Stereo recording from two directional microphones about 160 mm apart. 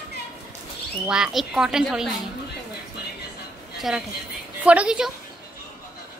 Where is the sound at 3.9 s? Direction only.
Centre (ahead or behind).